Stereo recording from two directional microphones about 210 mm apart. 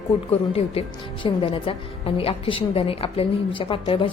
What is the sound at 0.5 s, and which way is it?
A woman's voice, 25° left (ahead or behind).